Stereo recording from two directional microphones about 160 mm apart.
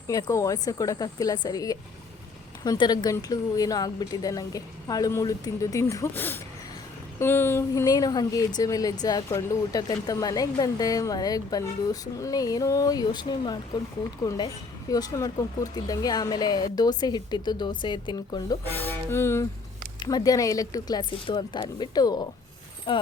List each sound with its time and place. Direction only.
0.1 s a woman's voice: 20° left (ahead or behind)
18.7 s music: 15° left (ahead or behind)
20.0 s a woman's voice: 25° left (ahead or behind)